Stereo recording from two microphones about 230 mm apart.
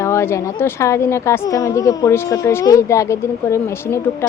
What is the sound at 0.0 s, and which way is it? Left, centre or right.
A woman's voice, centre.